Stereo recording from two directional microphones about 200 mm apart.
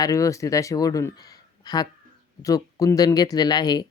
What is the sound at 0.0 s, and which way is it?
Speech, 15° left (ahead or behind).